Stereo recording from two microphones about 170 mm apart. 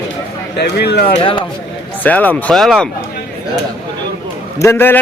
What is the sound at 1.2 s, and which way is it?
Speech, 30° left (ahead or behind).